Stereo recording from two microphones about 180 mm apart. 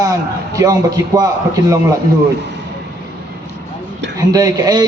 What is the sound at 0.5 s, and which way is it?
Speech, 20° right (ahead or behind).